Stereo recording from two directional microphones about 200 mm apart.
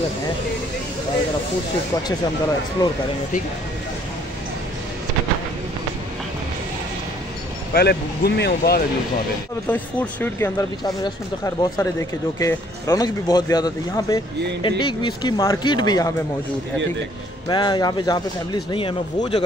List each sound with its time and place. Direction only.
2.8 s speech: 20° left (ahead or behind)
7.7 s speech: 55° left (ahead or behind)
9.7 s speech: 10° left (ahead or behind)
17.5 s speech: 20° left (ahead or behind)